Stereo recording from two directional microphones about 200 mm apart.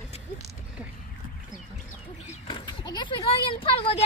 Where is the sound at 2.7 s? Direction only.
20° left (ahead or behind).